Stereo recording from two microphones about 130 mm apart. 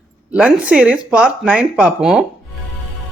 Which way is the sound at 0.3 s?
10° right (ahead or behind).